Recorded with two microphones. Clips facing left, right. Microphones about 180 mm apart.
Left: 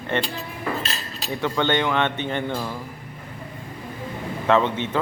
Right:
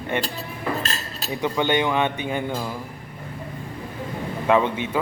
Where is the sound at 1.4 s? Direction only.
15° right (ahead or behind).